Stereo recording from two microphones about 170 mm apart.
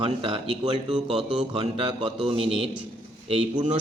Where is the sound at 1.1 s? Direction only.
5° right (ahead or behind).